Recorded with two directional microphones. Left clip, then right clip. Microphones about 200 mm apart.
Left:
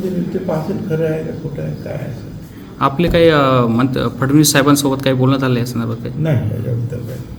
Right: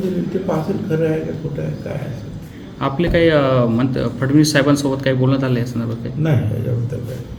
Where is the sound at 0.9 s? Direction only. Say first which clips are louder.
Left 1 dB; 5° left (ahead or behind).